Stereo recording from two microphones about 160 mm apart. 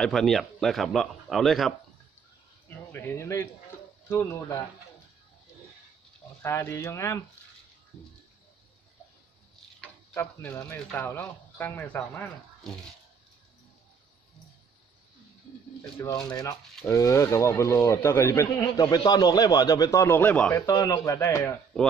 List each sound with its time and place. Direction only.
0.0 s speech: centre (ahead or behind)
2.9 s speech: 15° left (ahead or behind)
6.4 s speech: 15° left (ahead or behind)
9.8 s speech: 15° left (ahead or behind)
16.0 s speech: 25° left (ahead or behind)
20.5 s speech: 20° left (ahead or behind)